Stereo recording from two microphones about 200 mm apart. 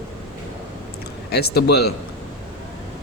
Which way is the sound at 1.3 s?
55° left (ahead or behind).